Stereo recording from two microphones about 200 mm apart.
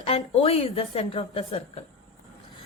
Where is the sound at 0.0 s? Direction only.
30° left (ahead or behind).